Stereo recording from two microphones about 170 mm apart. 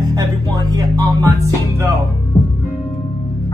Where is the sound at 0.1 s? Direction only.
25° right (ahead or behind).